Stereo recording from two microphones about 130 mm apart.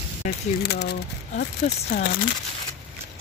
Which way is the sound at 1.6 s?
65° left (ahead or behind).